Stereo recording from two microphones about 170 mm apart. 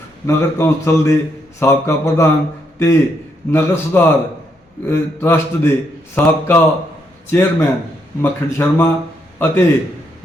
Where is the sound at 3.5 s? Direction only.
15° left (ahead or behind).